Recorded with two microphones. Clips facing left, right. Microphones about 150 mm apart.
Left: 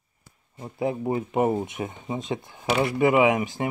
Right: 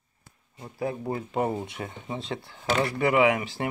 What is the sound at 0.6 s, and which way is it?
Speech, 20° left (ahead or behind).